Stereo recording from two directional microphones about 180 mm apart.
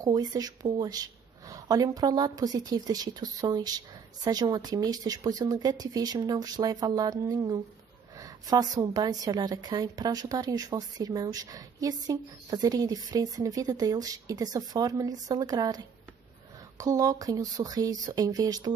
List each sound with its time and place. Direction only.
0.0 s speech: 20° right (ahead or behind)